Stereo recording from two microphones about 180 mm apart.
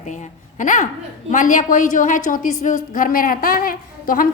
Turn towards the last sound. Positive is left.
turn(degrees=50)  # may be behind; listen again after turning